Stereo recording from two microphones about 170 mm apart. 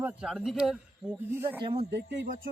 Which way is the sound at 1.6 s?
35° right (ahead or behind).